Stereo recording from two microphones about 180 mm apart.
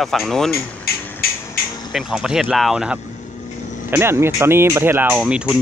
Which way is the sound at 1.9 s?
5° right (ahead or behind).